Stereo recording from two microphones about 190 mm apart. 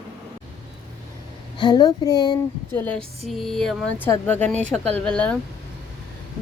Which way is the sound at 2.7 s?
10° left (ahead or behind).